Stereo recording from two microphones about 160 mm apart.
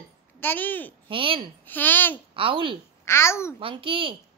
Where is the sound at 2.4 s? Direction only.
35° right (ahead or behind).